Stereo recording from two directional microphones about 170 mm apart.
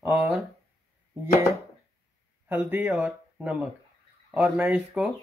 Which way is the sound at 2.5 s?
10° right (ahead or behind).